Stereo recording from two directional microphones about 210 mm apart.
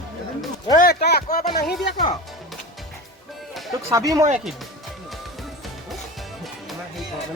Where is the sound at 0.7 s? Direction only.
45° left (ahead or behind).